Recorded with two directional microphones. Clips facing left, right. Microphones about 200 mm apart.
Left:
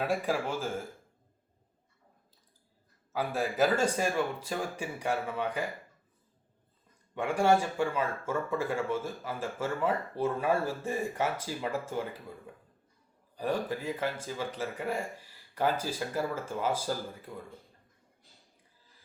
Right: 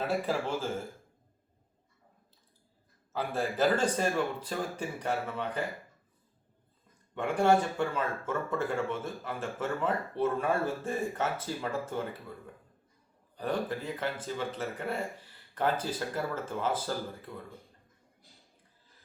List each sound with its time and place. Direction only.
0.3 s speech: 10° left (ahead or behind)
3.1 s speech: 10° left (ahead or behind)
7.2 s speech: 10° left (ahead or behind)
13.3 s speech: 10° left (ahead or behind)